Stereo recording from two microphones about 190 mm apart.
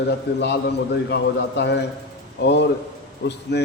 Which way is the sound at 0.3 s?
65° left (ahead or behind).